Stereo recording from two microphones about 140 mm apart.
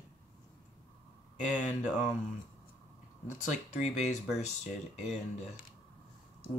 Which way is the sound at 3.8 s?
55° left (ahead or behind).